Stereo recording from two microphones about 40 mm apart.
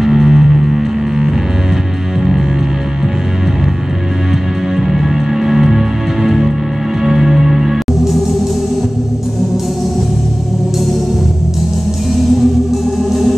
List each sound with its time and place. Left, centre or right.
0.0 s music: centre
4.7 s music: centre